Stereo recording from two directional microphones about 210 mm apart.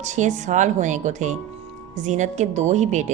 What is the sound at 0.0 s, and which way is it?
Speech, 35° right (ahead or behind).